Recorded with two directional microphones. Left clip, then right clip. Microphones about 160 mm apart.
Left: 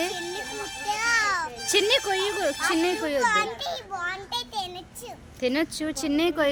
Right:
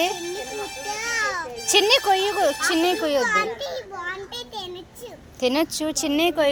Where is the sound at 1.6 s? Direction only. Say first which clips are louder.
Right 5 dB; centre (ahead or behind).